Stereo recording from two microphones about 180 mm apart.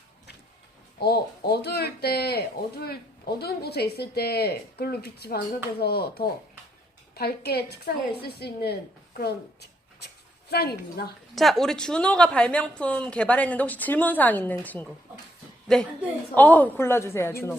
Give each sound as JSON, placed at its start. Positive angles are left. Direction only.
{"t": 0.9, "sound": "a woman's voice", "side_deg": 60}
{"t": 11.3, "sound": "a woman's voice", "side_deg": 0}